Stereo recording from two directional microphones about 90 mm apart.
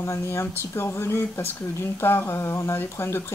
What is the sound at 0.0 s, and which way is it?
Speech, 30° left (ahead or behind).